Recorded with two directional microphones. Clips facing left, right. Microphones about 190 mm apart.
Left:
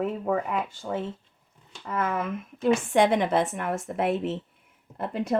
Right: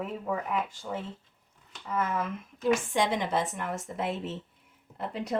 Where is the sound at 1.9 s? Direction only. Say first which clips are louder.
Left 2 dB; 60° left (ahead or behind).